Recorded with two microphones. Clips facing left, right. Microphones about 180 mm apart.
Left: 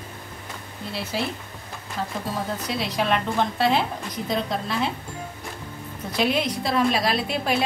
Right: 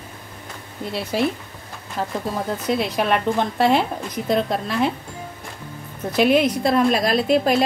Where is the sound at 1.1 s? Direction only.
55° right (ahead or behind).